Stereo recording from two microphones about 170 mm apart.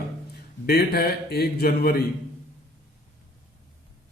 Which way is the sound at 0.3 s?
70° left (ahead or behind).